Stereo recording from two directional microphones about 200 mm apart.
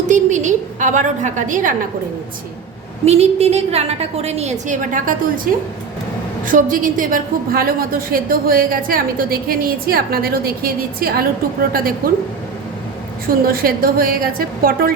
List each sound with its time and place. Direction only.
0.1 s a woman's voice: 40° right (ahead or behind)
3.1 s a woman's voice: 30° right (ahead or behind); by 11.3 s 50° right (ahead or behind)
13.2 s a woman's voice: 45° right (ahead or behind)